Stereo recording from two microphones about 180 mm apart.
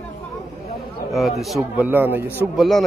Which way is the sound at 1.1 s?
Centre (ahead or behind).